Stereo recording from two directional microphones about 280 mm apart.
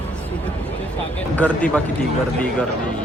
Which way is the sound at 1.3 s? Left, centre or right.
Centre.